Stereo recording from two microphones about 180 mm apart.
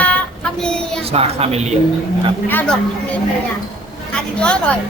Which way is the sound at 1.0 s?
35° right (ahead or behind).